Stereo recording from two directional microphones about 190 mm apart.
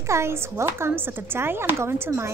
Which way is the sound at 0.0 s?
15° right (ahead or behind).